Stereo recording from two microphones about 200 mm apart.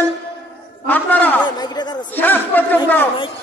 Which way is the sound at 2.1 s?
10° left (ahead or behind).